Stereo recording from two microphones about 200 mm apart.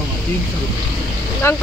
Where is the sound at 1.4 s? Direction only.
10° left (ahead or behind).